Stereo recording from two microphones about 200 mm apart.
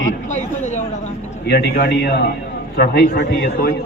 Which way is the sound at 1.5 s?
55° left (ahead or behind).